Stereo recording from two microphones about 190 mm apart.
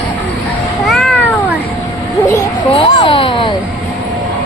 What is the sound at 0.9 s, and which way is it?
Cat, centre (ahead or behind).